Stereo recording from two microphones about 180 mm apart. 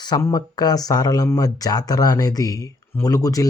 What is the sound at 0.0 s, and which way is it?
Speech, 20° left (ahead or behind).